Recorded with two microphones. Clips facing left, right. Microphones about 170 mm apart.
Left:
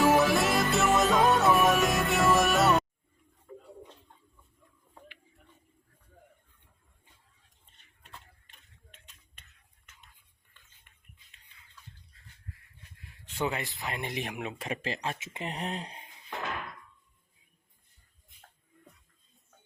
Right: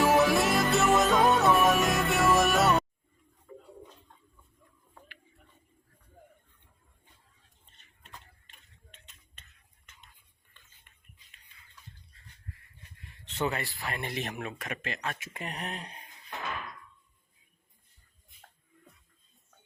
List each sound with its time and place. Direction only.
0.0 s music: centre (ahead or behind)
8.5 s tick-tock: 10° left (ahead or behind)
9.4 s whispering: 10° left (ahead or behind)
13.1 s speech: 10° left (ahead or behind)
14.6 s speech: 30° left (ahead or behind)